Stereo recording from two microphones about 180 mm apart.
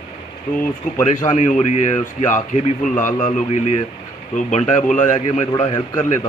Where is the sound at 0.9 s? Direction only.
40° left (ahead or behind).